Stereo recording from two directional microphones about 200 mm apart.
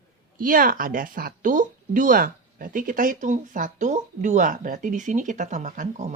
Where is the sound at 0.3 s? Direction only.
45° right (ahead or behind).